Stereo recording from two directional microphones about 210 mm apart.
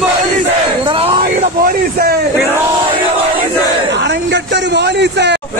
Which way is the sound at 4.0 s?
55° right (ahead or behind).